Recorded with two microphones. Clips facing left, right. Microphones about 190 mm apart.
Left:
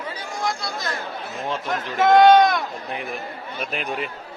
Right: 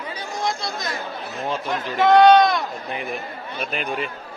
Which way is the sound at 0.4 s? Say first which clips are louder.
Right 1 dB; 20° right (ahead or behind).